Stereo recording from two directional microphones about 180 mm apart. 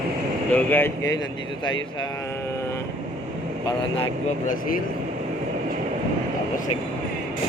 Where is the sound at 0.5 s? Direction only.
10° left (ahead or behind).